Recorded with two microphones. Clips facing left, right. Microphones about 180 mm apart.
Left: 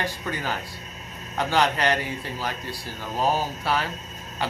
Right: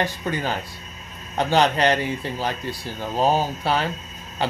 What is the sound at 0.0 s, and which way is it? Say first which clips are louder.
Speech: right 5 dB; 25° right (ahead or behind).